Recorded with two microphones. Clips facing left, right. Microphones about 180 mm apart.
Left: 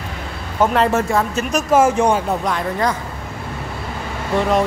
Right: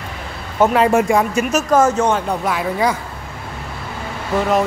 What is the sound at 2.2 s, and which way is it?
Speech, 5° right (ahead or behind).